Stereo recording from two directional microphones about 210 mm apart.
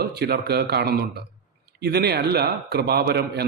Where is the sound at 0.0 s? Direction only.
50° right (ahead or behind).